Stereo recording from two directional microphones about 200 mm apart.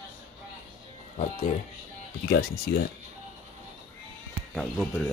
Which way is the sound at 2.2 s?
50° left (ahead or behind).